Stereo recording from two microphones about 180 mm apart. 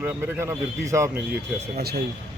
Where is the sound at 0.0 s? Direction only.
15° right (ahead or behind).